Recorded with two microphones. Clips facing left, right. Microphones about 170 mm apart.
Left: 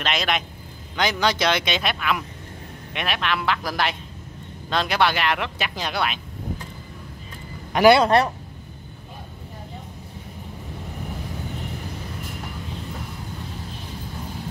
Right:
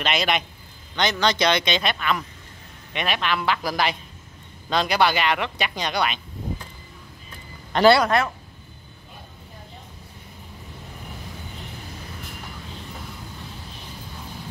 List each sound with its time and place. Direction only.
0.0 s speech: centre (ahead or behind)
7.7 s speech: 15° left (ahead or behind)
8.0 s a man's voice: 35° left (ahead or behind)